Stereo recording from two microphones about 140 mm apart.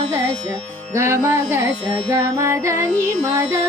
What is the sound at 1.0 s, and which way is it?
Female singing, 20° right (ahead or behind).